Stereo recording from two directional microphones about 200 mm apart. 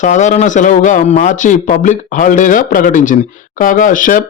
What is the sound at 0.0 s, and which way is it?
Speech, 35° left (ahead or behind).